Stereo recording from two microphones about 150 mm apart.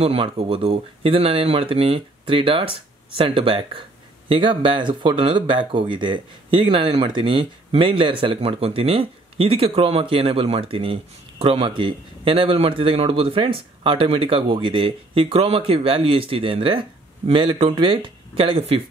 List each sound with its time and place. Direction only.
0.0 s speech: 40° right (ahead or behind)